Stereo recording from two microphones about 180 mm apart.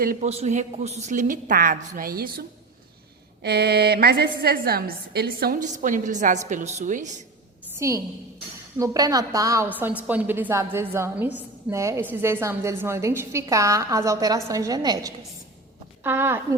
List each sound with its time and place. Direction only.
0.0 s a woman's voice: 55° right (ahead or behind)
0.3 s a woman's voice: 40° right (ahead or behind); by 2.4 s 55° right (ahead or behind)
3.4 s a woman's voice: 65° right (ahead or behind); by 7.1 s 45° right (ahead or behind)
7.8 s a woman's voice: 15° right (ahead or behind)